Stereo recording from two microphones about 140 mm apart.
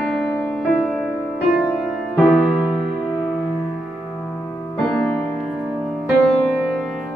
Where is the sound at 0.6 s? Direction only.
Centre (ahead or behind).